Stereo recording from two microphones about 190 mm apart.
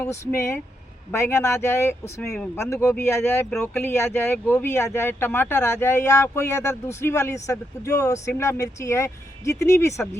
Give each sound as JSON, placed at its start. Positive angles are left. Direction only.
{"t": 0.0, "sound": "speech", "side_deg": 15}
{"t": 2.2, "sound": "speech", "side_deg": 0}
{"t": 2.6, "sound": "speech", "side_deg": 15}